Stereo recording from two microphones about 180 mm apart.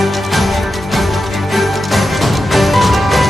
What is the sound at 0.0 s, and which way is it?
Music, centre (ahead or behind).